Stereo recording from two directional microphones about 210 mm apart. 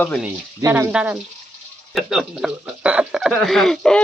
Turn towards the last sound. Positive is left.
turn(degrees=0)  # may be behind; listen again after turning